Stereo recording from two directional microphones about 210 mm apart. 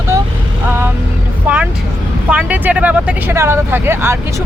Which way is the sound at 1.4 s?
5° right (ahead or behind).